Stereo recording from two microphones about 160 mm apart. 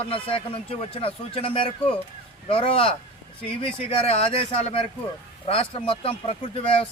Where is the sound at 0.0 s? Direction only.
35° left (ahead or behind).